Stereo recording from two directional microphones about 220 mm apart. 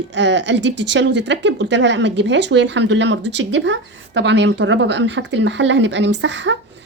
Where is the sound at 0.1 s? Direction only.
55° right (ahead or behind).